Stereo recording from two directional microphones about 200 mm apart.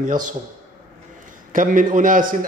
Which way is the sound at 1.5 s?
40° right (ahead or behind).